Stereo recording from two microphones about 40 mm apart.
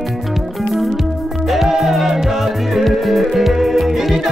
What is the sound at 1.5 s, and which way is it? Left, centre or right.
Music, centre.